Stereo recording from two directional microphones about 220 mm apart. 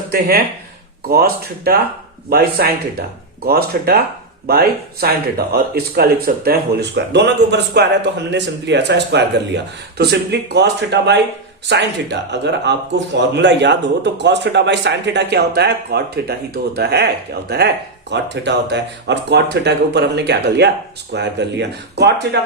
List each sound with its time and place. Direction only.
0.1 s speech: 45° right (ahead or behind)
18.1 s speech: 50° right (ahead or behind)